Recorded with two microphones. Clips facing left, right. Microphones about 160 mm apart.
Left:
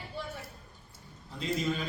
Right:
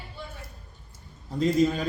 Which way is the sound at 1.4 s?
45° right (ahead or behind).